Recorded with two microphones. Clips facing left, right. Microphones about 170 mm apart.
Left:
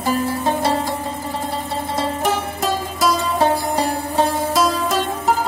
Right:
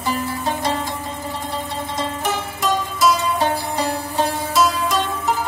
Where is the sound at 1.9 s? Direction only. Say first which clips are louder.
Left 4 dB; 40° left (ahead or behind).